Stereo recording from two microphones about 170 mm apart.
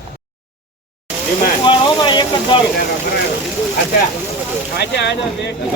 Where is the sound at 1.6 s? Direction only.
30° left (ahead or behind).